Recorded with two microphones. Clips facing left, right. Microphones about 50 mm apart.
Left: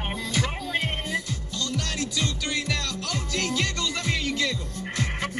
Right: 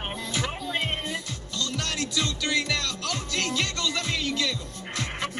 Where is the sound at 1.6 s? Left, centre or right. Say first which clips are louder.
Even; right.